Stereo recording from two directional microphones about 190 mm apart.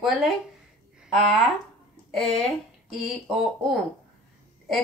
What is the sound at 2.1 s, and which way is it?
Speech, centre (ahead or behind).